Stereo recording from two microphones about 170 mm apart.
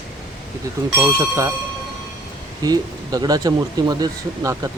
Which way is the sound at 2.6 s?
20° right (ahead or behind).